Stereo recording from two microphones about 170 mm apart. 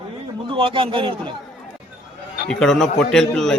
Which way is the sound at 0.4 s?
30° right (ahead or behind).